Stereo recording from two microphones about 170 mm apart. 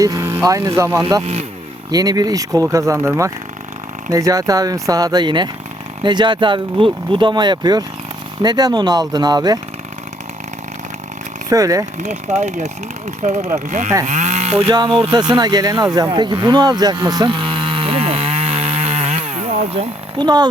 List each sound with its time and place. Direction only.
0.0 s speech: 20° right (ahead or behind)
11.4 s speech: 20° right (ahead or behind)
11.9 s speech: 45° right (ahead or behind); by 16.0 s 20° right (ahead or behind)
16.0 s chainsaw: 25° right (ahead or behind)